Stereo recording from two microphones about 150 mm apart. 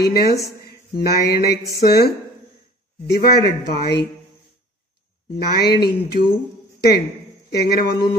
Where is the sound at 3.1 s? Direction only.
90° left.